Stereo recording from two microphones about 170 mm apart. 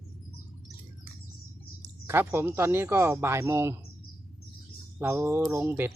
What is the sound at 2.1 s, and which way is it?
Speech, 15° right (ahead or behind).